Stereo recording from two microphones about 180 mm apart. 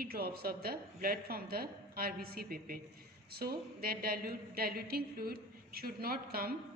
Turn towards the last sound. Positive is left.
turn(degrees=-55)  # may be behind; listen again after turning